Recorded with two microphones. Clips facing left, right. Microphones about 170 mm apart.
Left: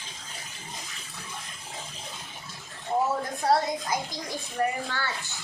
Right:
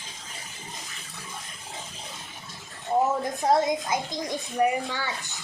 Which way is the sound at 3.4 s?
20° right (ahead or behind).